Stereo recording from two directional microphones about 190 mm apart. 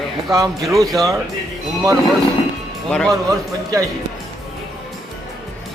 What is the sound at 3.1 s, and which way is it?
Speech, 20° right (ahead or behind).